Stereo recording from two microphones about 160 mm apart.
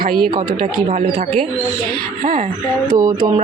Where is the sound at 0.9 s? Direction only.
50° right (ahead or behind).